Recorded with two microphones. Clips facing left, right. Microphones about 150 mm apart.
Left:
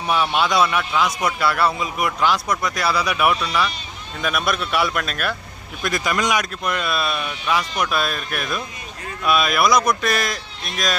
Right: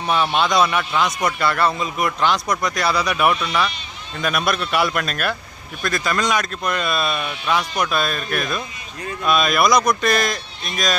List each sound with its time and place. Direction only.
0.1 s a man's voice: 5° left (ahead or behind)
5.8 s a man's voice: 15° left (ahead or behind)